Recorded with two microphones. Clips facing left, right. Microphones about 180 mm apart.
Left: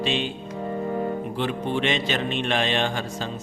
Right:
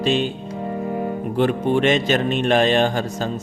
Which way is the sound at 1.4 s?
50° right (ahead or behind).